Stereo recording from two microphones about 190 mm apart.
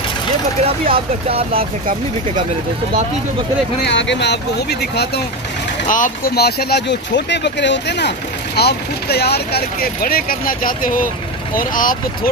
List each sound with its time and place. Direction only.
0.8 s speech: 30° right (ahead or behind)
3.8 s speech: 70° left (ahead or behind)
5.9 s speech: 45° left (ahead or behind)